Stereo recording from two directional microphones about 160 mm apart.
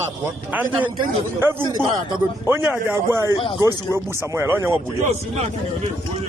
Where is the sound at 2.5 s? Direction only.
15° right (ahead or behind).